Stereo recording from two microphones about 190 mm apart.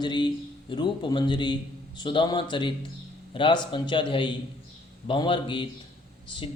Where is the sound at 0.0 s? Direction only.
25° left (ahead or behind).